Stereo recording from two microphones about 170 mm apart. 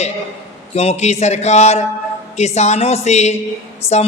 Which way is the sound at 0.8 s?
40° left (ahead or behind).